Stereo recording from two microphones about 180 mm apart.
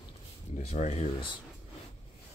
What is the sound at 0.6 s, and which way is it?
Speech, 40° left (ahead or behind).